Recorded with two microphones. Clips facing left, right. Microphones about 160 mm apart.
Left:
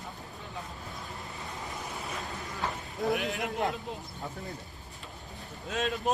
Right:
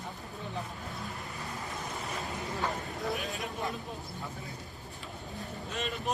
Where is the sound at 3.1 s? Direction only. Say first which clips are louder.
Left 5 dB; 75° left (ahead or behind).